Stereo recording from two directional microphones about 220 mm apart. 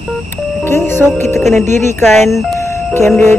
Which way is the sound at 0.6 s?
10° left (ahead or behind).